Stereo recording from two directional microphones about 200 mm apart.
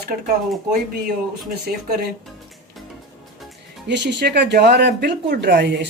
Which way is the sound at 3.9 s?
60° right (ahead or behind).